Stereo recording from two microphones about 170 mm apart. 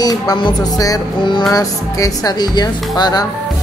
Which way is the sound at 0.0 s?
25° left (ahead or behind).